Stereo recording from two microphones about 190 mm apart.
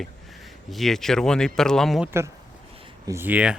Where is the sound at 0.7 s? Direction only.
Centre (ahead or behind).